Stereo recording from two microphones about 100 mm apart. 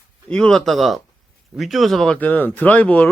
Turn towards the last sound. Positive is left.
turn(degrees=15)  # may be behind; listen again after turning